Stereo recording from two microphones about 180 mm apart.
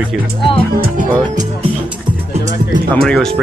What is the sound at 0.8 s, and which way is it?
Speech, 45° right (ahead or behind).